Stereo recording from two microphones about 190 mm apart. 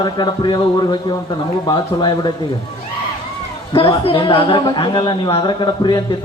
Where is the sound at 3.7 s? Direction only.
30° left (ahead or behind).